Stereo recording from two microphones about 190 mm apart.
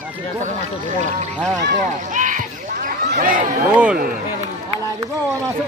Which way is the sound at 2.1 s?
40° right (ahead or behind).